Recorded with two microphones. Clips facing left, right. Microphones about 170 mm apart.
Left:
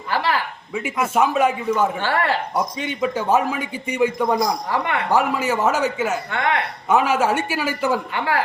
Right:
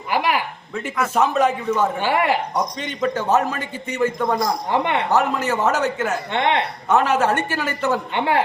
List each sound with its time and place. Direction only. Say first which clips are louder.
0.1 s speech: right 1 dB; 15° right (ahead or behind)
0.7 s a man's voice: left 1 dB; 10° left (ahead or behind)
2.0 s speech: right 2 dB; 15° right (ahead or behind)
2.6 s a man's voice: left 1 dB; 5° left (ahead or behind)
4.7 s speech: right 2 dB; 25° right (ahead or behind)
5.1 s a man's voice: left 2 dB; 10° left (ahead or behind)
6.3 s speech: right 6 dB; 25° right (ahead or behind)
6.8 s a man's voice: even; 10° left (ahead or behind)
8.1 s speech: right 2 dB; 25° right (ahead or behind)